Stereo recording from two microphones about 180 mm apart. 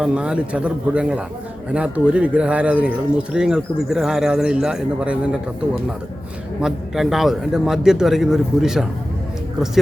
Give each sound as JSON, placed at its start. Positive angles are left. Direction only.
{"t": 0.0, "sound": "a man's voice", "side_deg": -5}
{"t": 6.6, "sound": "a man's voice", "side_deg": 0}